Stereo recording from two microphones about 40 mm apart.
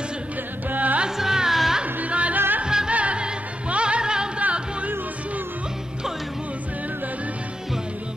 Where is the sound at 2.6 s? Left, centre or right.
Centre.